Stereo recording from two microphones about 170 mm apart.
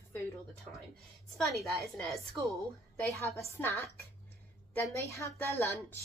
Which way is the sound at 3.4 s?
15° left (ahead or behind).